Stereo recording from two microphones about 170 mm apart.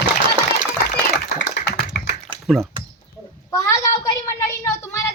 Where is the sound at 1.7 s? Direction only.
75° left (ahead or behind).